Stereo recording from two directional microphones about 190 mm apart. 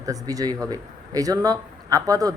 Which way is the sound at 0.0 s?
20° right (ahead or behind).